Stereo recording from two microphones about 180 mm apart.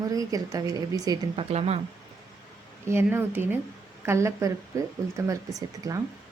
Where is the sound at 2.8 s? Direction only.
15° right (ahead or behind).